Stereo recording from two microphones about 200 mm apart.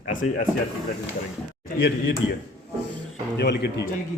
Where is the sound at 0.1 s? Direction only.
40° left (ahead or behind).